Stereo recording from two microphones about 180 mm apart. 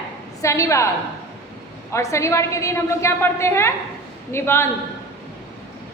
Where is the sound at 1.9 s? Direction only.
15° left (ahead or behind).